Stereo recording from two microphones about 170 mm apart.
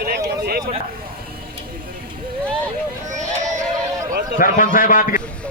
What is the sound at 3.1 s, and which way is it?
Run, 45° right (ahead or behind).